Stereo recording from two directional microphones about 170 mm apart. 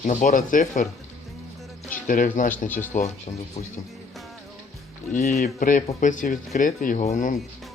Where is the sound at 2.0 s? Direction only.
50° left (ahead or behind).